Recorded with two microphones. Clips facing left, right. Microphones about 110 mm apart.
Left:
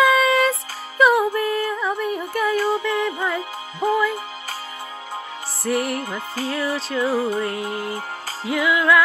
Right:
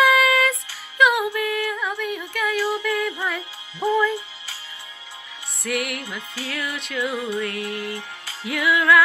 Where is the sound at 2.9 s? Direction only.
25° left (ahead or behind).